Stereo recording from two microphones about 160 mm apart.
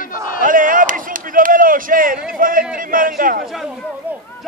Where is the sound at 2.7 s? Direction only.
60° right (ahead or behind).